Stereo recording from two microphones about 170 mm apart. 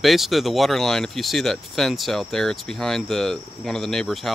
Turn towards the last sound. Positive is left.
turn(degrees=0)  # may be behind; listen again after turning